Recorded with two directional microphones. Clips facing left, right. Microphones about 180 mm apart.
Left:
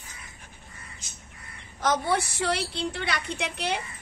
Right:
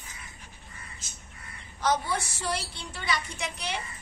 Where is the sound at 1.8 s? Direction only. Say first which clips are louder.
Left 3 dB; 60° left (ahead or behind).